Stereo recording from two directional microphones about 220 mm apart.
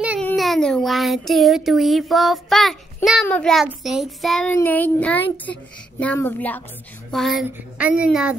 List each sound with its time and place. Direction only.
0.2 s a child's voice: 5° left (ahead or behind)